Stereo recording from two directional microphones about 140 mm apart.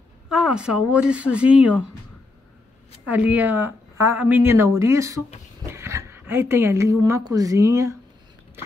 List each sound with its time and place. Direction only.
0.3 s speech: 5° right (ahead or behind)
3.1 s speech: 10° right (ahead or behind)